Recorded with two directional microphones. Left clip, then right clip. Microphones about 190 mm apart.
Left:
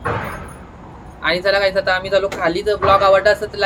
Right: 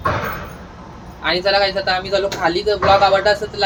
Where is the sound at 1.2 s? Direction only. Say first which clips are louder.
Even; 10° left (ahead or behind).